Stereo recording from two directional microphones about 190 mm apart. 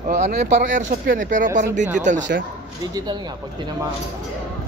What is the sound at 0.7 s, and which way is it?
Speech, 40° right (ahead or behind).